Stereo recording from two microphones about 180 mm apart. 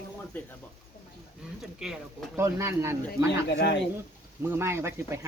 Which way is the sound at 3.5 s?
75° left (ahead or behind).